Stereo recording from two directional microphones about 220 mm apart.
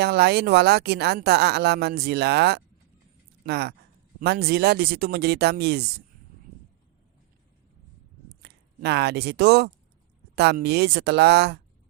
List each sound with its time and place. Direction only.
0.0 s speech: 45° right (ahead or behind)
8.4 s speech: 50° right (ahead or behind)